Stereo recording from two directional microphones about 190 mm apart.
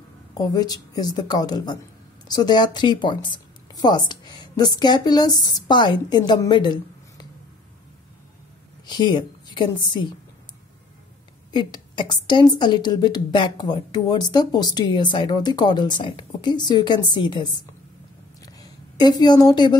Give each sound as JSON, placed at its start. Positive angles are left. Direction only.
{"t": 0.3, "sound": "a woman's voice", "side_deg": 20}
{"t": 8.8, "sound": "a woman's voice", "side_deg": 20}
{"t": 11.5, "sound": "a woman's voice", "side_deg": 25}
{"t": 18.4, "sound": "a sound", "side_deg": 20}